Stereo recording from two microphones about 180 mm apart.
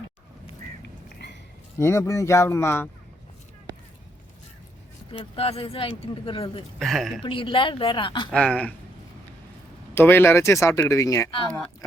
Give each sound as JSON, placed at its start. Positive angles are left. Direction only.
{"t": 1.2, "sound": "a sound", "side_deg": 75}
{"t": 1.8, "sound": "speech", "side_deg": 15}
{"t": 5.1, "sound": "a woman's voice", "side_deg": 35}
{"t": 6.7, "sound": "speech", "side_deg": 0}
{"t": 7.2, "sound": "a woman's voice", "side_deg": 30}
{"t": 8.3, "sound": "speech", "side_deg": 5}
{"t": 9.9, "sound": "speech", "side_deg": 10}
{"t": 11.5, "sound": "speech", "side_deg": 5}